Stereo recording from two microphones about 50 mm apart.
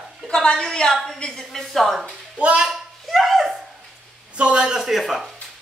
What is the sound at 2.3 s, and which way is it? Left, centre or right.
Speech, right.